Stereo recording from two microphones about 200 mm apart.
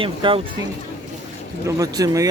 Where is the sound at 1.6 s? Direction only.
15° right (ahead or behind).